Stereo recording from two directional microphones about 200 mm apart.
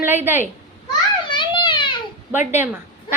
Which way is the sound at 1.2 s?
25° left (ahead or behind).